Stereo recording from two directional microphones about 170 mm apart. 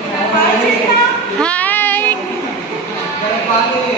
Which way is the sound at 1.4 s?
10° left (ahead or behind).